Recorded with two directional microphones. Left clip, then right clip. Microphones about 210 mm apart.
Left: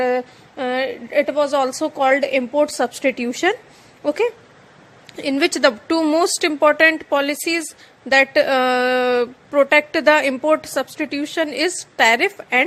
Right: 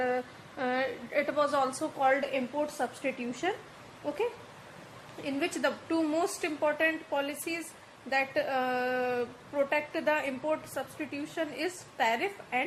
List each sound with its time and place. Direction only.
0.0 s a woman's voice: 30° left (ahead or behind)